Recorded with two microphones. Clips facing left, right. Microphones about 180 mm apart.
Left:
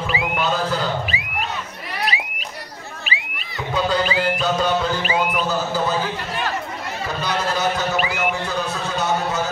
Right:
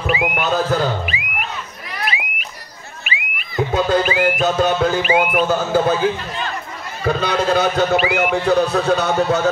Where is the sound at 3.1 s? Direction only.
35° left (ahead or behind).